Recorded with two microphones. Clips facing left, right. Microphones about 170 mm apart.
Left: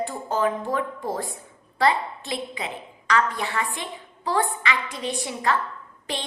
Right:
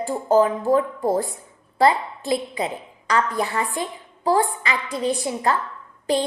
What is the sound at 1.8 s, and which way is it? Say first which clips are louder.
A woman's voice: right 4 dB; 35° right (ahead or behind).